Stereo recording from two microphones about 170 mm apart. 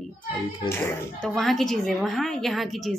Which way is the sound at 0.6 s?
15° left (ahead or behind).